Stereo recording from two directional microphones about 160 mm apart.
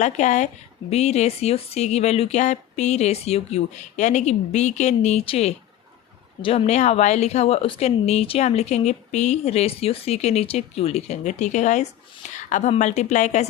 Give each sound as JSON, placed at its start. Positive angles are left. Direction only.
{"t": 0.0, "sound": "a woman's voice", "side_deg": 50}